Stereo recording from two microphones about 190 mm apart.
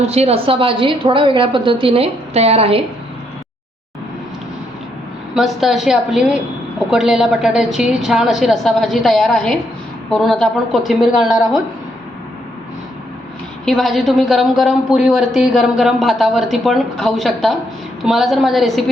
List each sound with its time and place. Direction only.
0.0 s a woman's voice: 35° right (ahead or behind)
5.3 s a woman's voice: centre (ahead or behind)
13.7 s a woman's voice: centre (ahead or behind)